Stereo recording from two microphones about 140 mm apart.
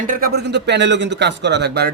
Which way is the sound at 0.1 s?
90° right.